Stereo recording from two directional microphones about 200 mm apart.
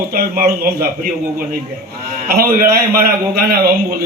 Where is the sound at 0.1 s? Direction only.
45° right (ahead or behind).